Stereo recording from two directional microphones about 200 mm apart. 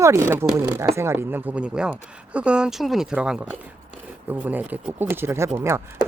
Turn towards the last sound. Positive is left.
turn(degrees=-15)  # may be behind; listen again after turning